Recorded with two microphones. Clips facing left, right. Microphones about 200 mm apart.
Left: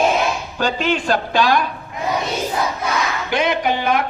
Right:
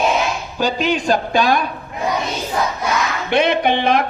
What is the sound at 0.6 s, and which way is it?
Speech, 10° right (ahead or behind).